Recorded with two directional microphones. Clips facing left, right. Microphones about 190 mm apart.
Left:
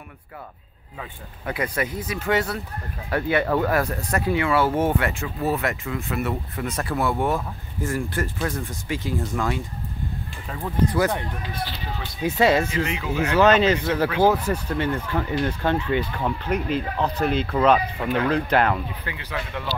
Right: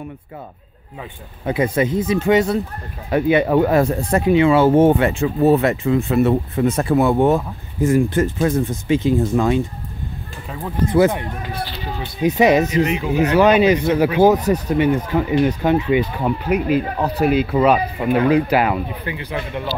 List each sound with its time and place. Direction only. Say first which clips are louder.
1.4 s speech: right 8 dB; 25° right (ahead or behind)
10.9 s speech: right 7 dB; 20° right (ahead or behind)